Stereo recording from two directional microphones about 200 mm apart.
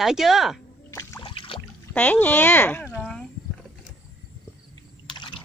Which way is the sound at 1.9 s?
10° left (ahead or behind).